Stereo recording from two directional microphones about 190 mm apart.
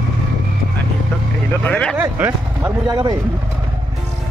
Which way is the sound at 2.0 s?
15° right (ahead or behind).